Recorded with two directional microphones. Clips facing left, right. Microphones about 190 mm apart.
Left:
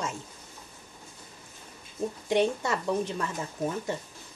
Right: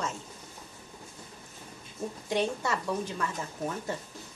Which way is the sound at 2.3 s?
20° left (ahead or behind).